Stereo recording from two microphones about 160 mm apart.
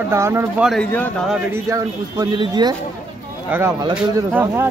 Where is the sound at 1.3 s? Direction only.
15° right (ahead or behind).